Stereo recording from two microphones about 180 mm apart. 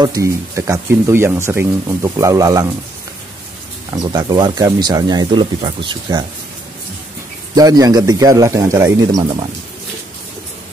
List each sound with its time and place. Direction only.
0.0 s speech: 20° right (ahead or behind)
3.9 s speech: 20° right (ahead or behind)
7.5 s speech: 20° right (ahead or behind)